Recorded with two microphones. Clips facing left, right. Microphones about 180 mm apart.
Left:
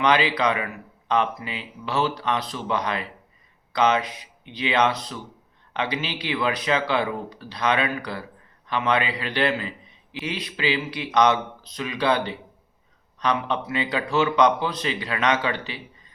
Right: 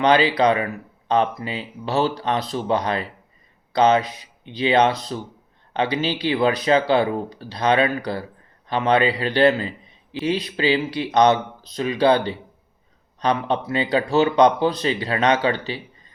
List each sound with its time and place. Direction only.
0.0 s speech: 35° right (ahead or behind)